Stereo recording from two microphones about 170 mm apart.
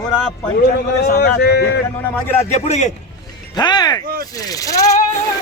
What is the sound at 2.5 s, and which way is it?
Speech, 40° left (ahead or behind).